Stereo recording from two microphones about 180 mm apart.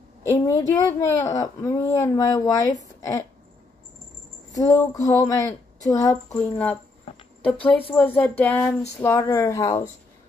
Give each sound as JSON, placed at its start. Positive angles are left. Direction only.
{"t": 0.2, "sound": "speech", "side_deg": 15}
{"t": 4.5, "sound": "speech", "side_deg": 20}
{"t": 6.3, "sound": "speech", "side_deg": 10}
{"t": 7.9, "sound": "speech", "side_deg": 10}